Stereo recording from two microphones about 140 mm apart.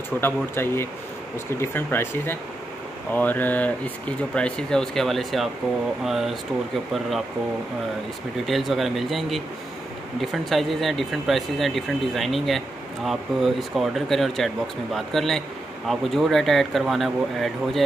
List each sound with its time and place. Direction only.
0.2 s speech: 15° left (ahead or behind); by 6.3 s centre (ahead or behind)
8.5 s speech: centre (ahead or behind)